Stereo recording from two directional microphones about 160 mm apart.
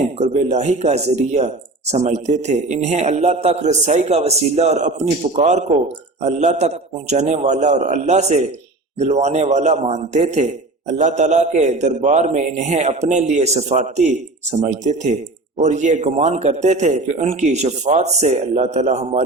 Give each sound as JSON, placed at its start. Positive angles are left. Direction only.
{"t": 0.0, "sound": "speech", "side_deg": -45}